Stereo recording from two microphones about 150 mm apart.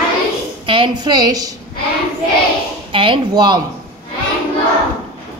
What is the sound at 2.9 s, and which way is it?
Speech, 35° right (ahead or behind).